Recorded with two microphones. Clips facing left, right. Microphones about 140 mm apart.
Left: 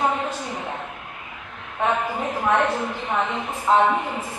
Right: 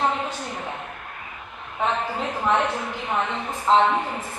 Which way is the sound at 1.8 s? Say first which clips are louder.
Left 2 dB; 10° left (ahead or behind).